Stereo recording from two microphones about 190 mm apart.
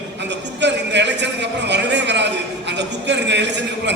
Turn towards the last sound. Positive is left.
turn(degrees=-65)  # may be behind; listen again after turning